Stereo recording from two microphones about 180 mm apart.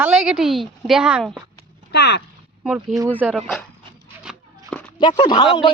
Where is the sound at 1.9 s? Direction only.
65° left (ahead or behind).